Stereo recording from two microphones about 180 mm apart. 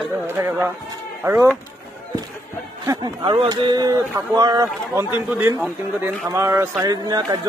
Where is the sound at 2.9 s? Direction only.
25° right (ahead or behind).